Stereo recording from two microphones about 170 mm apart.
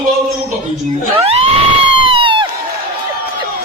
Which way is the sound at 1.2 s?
35° right (ahead or behind).